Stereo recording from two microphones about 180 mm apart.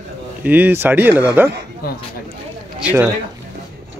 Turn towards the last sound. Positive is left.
turn(degrees=-10)  # may be behind; listen again after turning